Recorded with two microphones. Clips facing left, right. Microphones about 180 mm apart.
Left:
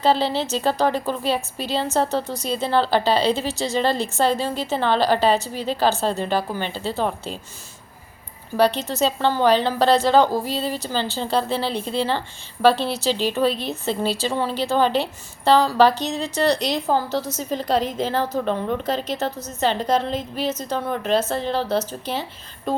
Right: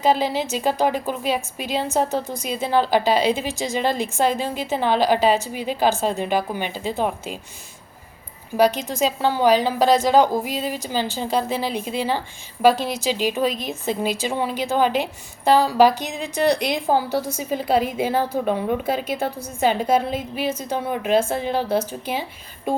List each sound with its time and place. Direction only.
0.0 s a woman's voice: 10° right (ahead or behind)
8.8 s a woman's voice: 10° right (ahead or behind)
13.5 s a woman's voice: 35° left (ahead or behind)
13.8 s a woman's voice: 15° right (ahead or behind)